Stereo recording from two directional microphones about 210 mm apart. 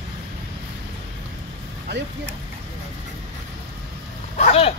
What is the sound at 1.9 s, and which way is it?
Speech, 55° right (ahead or behind).